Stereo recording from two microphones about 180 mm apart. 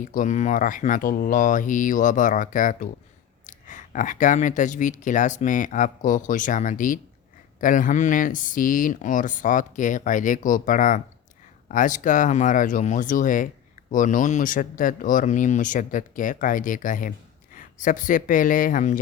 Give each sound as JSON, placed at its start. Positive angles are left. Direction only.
{"t": 0.1, "sound": "speech", "side_deg": 45}